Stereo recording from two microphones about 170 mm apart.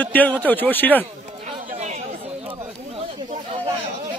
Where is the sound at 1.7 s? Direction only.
40° right (ahead or behind).